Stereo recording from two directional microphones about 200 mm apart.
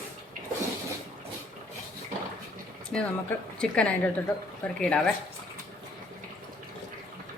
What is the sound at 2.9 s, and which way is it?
Speech, 5° left (ahead or behind).